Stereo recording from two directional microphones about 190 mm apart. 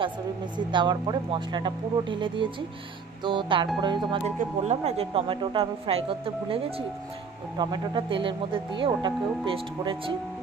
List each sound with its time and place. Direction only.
0.7 s speech: 25° right (ahead or behind)